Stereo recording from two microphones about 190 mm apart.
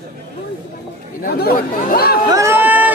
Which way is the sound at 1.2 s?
55° left (ahead or behind).